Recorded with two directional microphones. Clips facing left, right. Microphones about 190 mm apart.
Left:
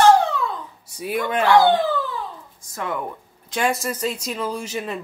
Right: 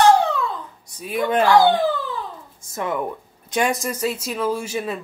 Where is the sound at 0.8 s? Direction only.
10° left (ahead or behind).